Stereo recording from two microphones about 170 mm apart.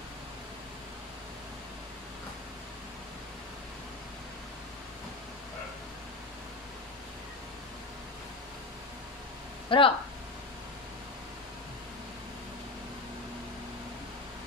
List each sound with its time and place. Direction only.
9.7 s speech: 30° left (ahead or behind)